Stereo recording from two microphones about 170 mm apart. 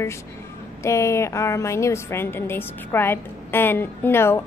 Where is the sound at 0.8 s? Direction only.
15° left (ahead or behind).